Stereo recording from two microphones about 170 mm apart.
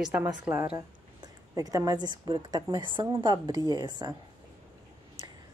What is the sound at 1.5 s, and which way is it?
A woman's voice, 20° right (ahead or behind).